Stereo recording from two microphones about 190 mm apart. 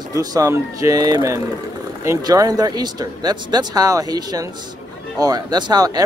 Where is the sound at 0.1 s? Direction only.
20° right (ahead or behind).